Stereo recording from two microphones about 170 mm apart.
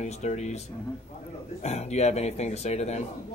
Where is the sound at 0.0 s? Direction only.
40° left (ahead or behind).